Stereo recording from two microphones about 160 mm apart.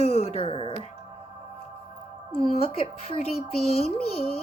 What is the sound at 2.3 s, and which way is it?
Speech, 40° left (ahead or behind).